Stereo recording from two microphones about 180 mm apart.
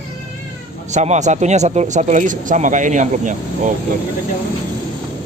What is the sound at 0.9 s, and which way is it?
Speech, 40° right (ahead or behind).